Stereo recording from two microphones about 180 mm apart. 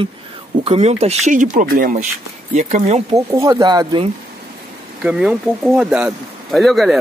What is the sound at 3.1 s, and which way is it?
Speech, 20° right (ahead or behind).